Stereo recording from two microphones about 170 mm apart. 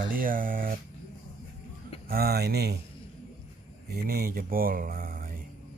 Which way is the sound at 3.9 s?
60° right (ahead or behind).